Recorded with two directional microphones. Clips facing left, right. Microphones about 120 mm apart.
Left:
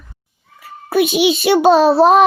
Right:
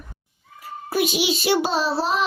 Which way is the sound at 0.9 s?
65° left (ahead or behind).